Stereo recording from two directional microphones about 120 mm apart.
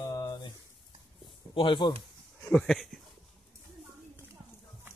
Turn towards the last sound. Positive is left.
turn(degrees=0)  # may be behind; listen again after turning